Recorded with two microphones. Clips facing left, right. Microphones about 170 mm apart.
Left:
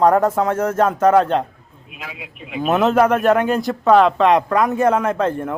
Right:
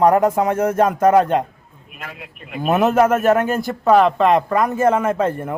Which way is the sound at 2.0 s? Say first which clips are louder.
Left 1 dB; 5° left (ahead or behind).